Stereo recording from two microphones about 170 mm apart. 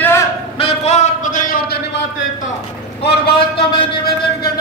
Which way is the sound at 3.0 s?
75° left (ahead or behind).